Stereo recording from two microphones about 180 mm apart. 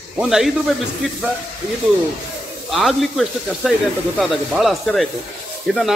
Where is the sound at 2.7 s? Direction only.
Centre (ahead or behind).